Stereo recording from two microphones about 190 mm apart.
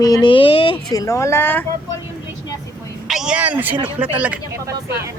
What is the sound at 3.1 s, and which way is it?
A woman's voice, 5° right (ahead or behind).